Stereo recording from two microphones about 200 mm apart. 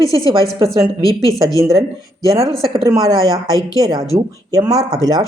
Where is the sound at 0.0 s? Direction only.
15° left (ahead or behind).